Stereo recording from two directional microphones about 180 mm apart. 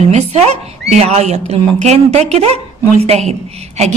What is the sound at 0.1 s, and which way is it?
A woman's voice, 35° right (ahead or behind).